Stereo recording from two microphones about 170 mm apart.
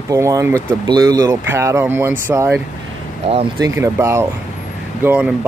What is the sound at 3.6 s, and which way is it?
Speech, 15° right (ahead or behind).